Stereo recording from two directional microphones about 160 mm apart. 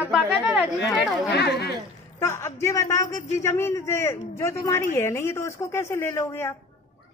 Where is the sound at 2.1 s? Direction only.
15° left (ahead or behind).